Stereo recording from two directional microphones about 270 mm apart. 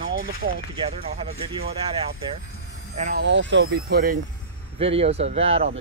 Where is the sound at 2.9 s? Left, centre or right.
Right.